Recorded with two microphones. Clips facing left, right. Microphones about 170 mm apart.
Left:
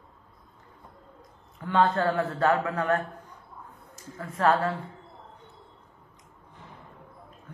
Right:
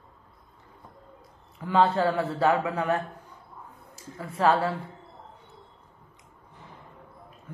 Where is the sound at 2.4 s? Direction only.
15° right (ahead or behind).